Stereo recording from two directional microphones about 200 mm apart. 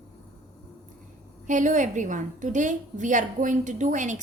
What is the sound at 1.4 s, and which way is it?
A woman's voice, 40° right (ahead or behind).